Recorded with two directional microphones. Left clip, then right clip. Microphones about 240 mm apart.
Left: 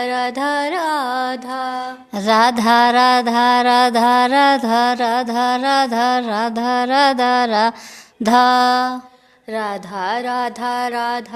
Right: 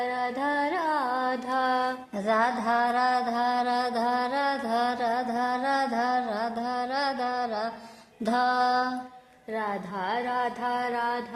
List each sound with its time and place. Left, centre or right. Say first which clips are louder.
0.0 s music: left 9 dB; left
1.5 s mantra: left 2 dB; centre
2.1 s mantra: left 12 dB; left
9.5 s mantra: left 8 dB; left